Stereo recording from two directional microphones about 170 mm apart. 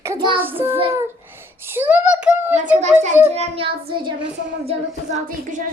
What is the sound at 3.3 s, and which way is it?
Child singing, 35° right (ahead or behind).